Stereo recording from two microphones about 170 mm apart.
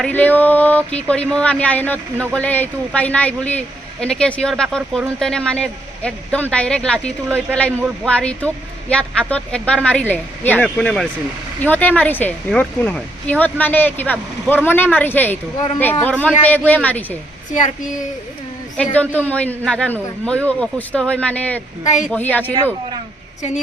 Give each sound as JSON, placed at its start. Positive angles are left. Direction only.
{"t": 0.0, "sound": "speech", "side_deg": 10}
{"t": 17.5, "sound": "speech", "side_deg": 50}
{"t": 18.8, "sound": "speech", "side_deg": 10}
{"t": 21.8, "sound": "speech", "side_deg": 45}
{"t": 22.1, "sound": "speech", "side_deg": 10}